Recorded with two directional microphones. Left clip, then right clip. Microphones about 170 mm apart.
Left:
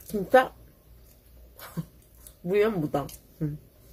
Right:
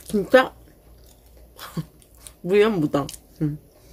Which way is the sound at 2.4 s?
20° right (ahead or behind).